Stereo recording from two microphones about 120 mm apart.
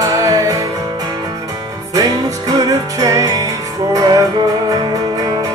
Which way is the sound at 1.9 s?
30° right (ahead or behind).